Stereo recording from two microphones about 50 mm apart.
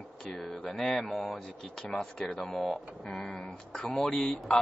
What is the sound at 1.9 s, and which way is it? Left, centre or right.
Speech, centre.